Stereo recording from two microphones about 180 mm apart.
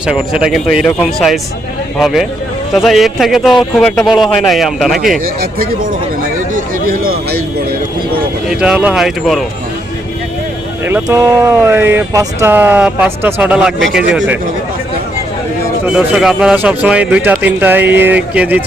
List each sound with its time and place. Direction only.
0.0 s speech: 5° right (ahead or behind)
5.2 s speech: 55° right (ahead or behind)
8.4 s speech: 5° right (ahead or behind)
10.8 s speech: 15° right (ahead or behind)
16.0 s speech: 5° right (ahead or behind)